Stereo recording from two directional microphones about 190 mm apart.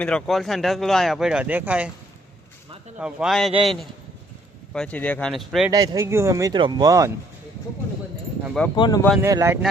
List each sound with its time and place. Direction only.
0.0 s speech: 5° left (ahead or behind)
3.0 s speech: 5° right (ahead or behind)
5.7 s speech: 20° right (ahead or behind)
8.7 s speech: 20° left (ahead or behind)
9.2 s speech: 15° right (ahead or behind)